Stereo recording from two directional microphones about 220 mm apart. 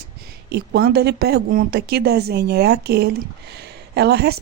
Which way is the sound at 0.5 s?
50° right (ahead or behind).